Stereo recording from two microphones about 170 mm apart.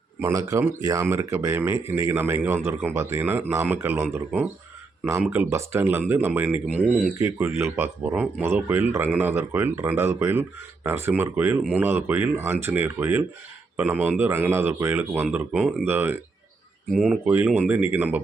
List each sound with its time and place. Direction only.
0.2 s speech: 20° right (ahead or behind)